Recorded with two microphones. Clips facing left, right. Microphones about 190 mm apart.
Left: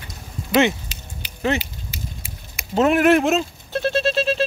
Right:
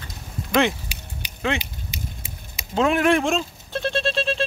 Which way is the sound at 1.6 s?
15° right (ahead or behind).